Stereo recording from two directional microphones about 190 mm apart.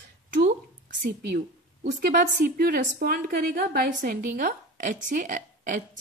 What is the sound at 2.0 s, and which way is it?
A woman's voice, 55° right (ahead or behind).